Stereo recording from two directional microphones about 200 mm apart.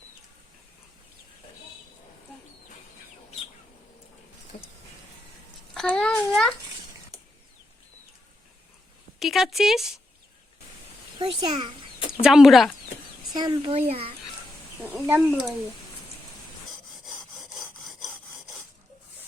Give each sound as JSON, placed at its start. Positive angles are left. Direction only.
{"t": 5.7, "sound": "speech", "side_deg": 5}
{"t": 9.1, "sound": "speech", "side_deg": 0}
{"t": 11.2, "sound": "a child's voice", "side_deg": -25}
{"t": 11.9, "sound": "bird", "side_deg": 25}
{"t": 12.2, "sound": "speech", "side_deg": 0}
{"t": 13.3, "sound": "a child's voice", "side_deg": -20}
{"t": 15.0, "sound": "speech", "side_deg": -10}
{"t": 16.9, "sound": "sawing", "side_deg": 0}